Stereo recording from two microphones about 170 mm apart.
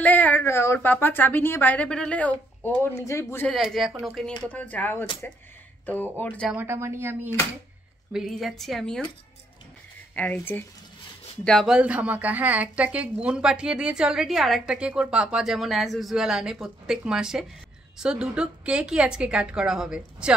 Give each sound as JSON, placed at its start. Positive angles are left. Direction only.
{"t": 0.0, "sound": "a woman's voice", "side_deg": 10}
{"t": 3.4, "sound": "a woman's voice", "side_deg": 0}
{"t": 6.5, "sound": "speech", "side_deg": -15}
{"t": 8.1, "sound": "a woman's voice", "side_deg": 0}
{"t": 10.1, "sound": "a woman's voice", "side_deg": 10}
{"t": 11.4, "sound": "a woman's voice", "side_deg": 0}